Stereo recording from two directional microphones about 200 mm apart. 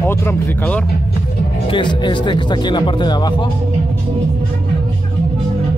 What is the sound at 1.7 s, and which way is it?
Speech, 25° left (ahead or behind).